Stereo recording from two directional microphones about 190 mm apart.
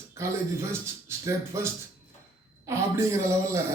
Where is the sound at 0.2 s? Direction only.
15° right (ahead or behind).